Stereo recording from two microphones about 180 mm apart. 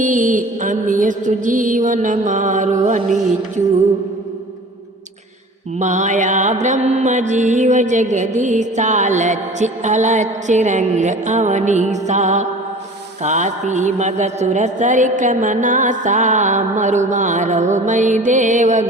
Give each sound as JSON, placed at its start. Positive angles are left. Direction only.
{"t": 0.0, "sound": "speech", "side_deg": -45}
{"t": 5.8, "sound": "mantra", "side_deg": -40}
{"t": 13.2, "sound": "speech", "side_deg": -40}